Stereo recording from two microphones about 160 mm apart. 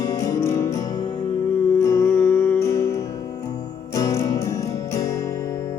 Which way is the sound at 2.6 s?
20° left (ahead or behind).